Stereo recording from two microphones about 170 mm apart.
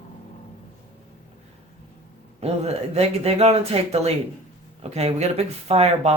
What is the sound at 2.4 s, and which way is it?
Speech, 40° right (ahead or behind).